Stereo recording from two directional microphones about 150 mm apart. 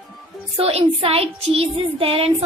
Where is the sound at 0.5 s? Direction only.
40° right (ahead or behind).